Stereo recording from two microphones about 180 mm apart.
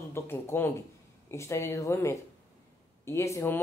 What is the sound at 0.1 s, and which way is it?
Speech, 15° left (ahead or behind).